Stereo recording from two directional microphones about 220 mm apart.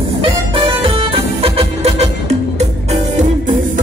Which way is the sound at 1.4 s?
25° right (ahead or behind).